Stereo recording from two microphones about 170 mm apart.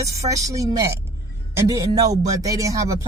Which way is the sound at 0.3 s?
20° right (ahead or behind).